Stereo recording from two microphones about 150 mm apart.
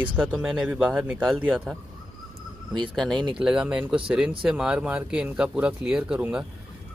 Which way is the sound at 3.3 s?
5° right (ahead or behind).